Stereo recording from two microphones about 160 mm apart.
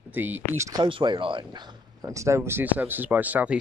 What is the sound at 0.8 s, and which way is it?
Speech, 30° right (ahead or behind).